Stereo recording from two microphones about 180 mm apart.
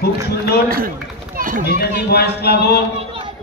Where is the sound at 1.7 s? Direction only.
60° left (ahead or behind).